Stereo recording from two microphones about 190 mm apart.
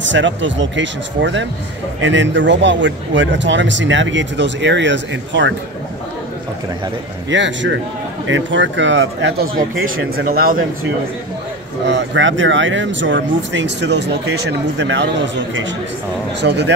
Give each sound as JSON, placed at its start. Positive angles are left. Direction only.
{"t": 0.0, "sound": "a man's voice", "side_deg": -75}
{"t": 7.2, "sound": "a man's voice", "side_deg": -70}
{"t": 9.8, "sound": "speech", "side_deg": -50}
{"t": 11.9, "sound": "a man's voice", "side_deg": -75}